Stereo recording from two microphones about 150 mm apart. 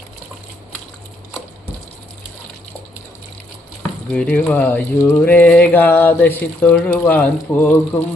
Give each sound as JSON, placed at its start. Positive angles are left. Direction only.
{"t": 4.1, "sound": "speech", "side_deg": 10}